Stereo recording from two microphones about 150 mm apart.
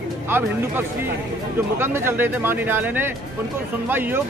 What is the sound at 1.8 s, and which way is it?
Speech, 15° right (ahead or behind).